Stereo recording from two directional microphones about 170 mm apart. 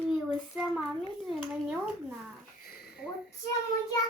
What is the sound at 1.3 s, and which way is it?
Speech, 5° right (ahead or behind).